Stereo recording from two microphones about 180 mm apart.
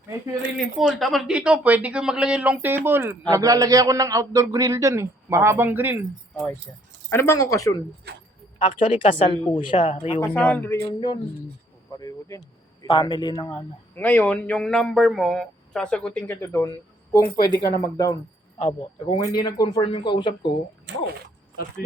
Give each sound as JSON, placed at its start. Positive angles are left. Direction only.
{"t": 0.6, "sound": "speech", "side_deg": 0}
{"t": 7.1, "sound": "a man's voice", "side_deg": 15}
{"t": 8.6, "sound": "a woman's voice", "side_deg": 30}
{"t": 10.2, "sound": "a man's voice", "side_deg": 10}
{"t": 11.9, "sound": "a woman's voice", "side_deg": 20}